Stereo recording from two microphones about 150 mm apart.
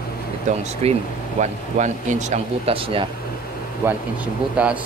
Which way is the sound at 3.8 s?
10° right (ahead or behind).